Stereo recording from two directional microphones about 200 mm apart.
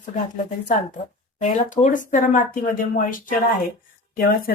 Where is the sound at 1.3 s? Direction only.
40° left (ahead or behind).